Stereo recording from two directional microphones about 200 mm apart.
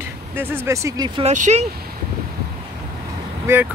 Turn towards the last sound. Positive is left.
turn(degrees=-15)  # may be behind; listen again after turning